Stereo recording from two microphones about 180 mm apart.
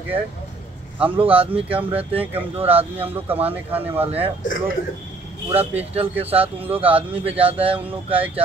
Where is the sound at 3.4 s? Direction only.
10° right (ahead or behind).